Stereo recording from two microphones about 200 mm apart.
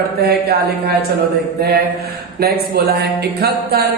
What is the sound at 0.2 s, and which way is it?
Speech, 50° right (ahead or behind).